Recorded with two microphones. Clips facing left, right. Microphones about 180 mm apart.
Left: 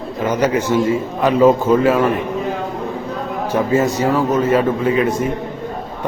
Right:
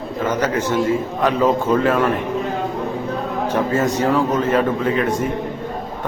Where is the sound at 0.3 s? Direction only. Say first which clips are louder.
Left 4 dB; 10° left (ahead or behind).